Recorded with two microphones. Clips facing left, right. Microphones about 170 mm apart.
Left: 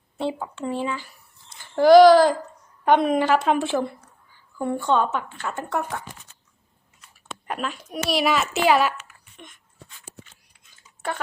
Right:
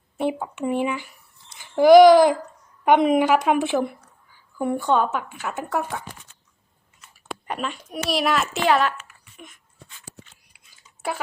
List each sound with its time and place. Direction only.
0.2 s a woman's voice: 15° right (ahead or behind)
1.5 s babbling: 15° right (ahead or behind)
2.8 s a woman's voice: 15° right (ahead or behind)
7.4 s a child's voice: centre (ahead or behind)
9.4 s a child's voice: 5° right (ahead or behind)
10.5 s a sound: 10° right (ahead or behind)